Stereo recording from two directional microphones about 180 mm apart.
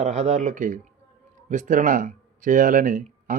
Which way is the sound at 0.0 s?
40° right (ahead or behind).